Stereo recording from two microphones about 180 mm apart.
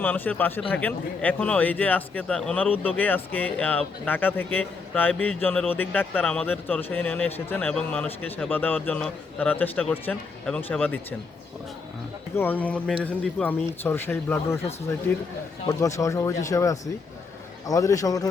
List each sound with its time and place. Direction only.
0.0 s speech: 10° left (ahead or behind)
12.4 s speech: 10° left (ahead or behind)
15.8 s a man's voice: 15° left (ahead or behind)